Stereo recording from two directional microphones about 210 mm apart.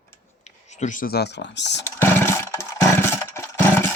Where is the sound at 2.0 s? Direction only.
10° left (ahead or behind).